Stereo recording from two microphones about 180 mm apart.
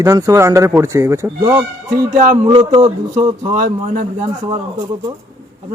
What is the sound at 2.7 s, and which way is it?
Speech, 25° right (ahead or behind).